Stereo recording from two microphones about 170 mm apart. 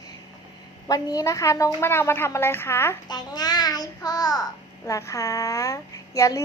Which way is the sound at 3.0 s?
25° left (ahead or behind).